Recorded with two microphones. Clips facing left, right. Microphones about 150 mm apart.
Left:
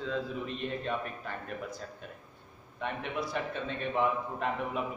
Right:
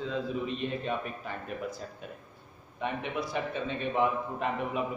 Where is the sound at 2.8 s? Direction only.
5° right (ahead or behind).